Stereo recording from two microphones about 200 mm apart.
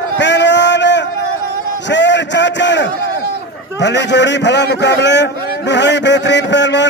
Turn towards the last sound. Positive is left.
turn(degrees=60)  # may be behind; listen again after turning